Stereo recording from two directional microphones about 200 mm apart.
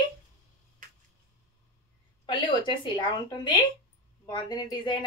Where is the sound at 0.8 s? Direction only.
45° right (ahead or behind).